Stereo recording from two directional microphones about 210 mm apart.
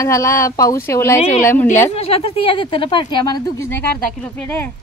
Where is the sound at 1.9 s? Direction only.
30° left (ahead or behind).